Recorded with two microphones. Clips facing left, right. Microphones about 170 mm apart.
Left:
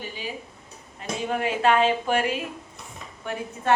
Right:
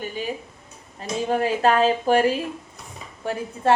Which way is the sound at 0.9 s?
35° right (ahead or behind).